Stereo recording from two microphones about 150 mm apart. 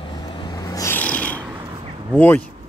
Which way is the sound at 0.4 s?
25° left (ahead or behind).